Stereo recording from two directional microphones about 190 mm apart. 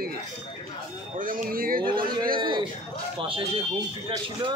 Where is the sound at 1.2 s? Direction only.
45° right (ahead or behind).